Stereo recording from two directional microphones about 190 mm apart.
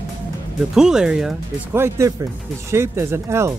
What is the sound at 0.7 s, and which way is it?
Speech, 5° right (ahead or behind).